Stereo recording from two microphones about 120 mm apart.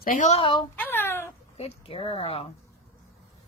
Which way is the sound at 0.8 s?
15° left (ahead or behind).